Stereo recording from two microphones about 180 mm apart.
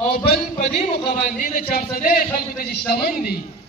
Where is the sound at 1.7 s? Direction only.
55° left (ahead or behind).